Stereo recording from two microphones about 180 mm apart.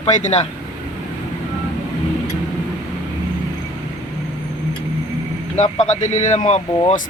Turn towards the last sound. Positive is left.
turn(degrees=40)  # may be behind; listen again after turning